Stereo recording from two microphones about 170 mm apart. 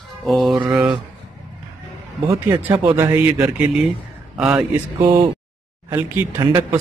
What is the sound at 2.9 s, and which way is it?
A man's voice, 15° right (ahead or behind).